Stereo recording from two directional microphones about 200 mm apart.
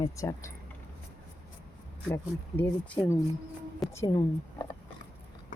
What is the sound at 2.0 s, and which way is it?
Speech, 10° left (ahead or behind).